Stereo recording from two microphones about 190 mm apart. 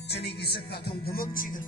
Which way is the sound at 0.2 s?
60° left (ahead or behind).